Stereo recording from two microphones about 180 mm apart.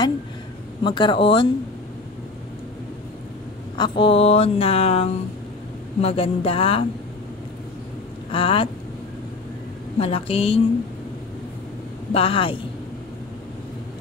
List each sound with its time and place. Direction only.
0.8 s speech: 25° left (ahead or behind)
3.7 s speech: 25° left (ahead or behind)
8.3 s speech: 30° left (ahead or behind)
9.9 s speech: 30° left (ahead or behind)
12.1 s speech: 30° left (ahead or behind)